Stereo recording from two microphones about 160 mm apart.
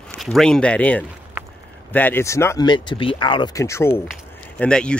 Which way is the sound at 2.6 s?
30° left (ahead or behind).